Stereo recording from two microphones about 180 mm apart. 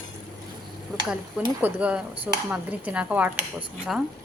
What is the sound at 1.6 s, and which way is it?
Speech, 10° right (ahead or behind).